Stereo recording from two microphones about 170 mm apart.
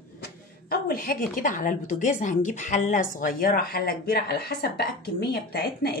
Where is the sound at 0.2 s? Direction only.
60° left (ahead or behind).